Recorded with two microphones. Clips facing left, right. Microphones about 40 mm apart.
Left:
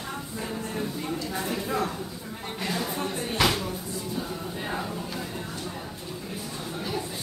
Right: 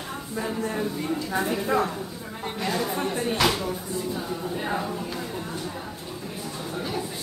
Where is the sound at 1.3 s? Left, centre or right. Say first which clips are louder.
Right 6 dB; centre.